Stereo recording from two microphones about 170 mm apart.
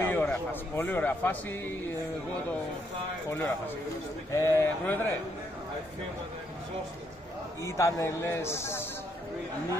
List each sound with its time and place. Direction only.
0.0 s speech: 10° left (ahead or behind)
3.3 s a man's voice: 15° left (ahead or behind)
7.6 s a man's voice: 15° left (ahead or behind)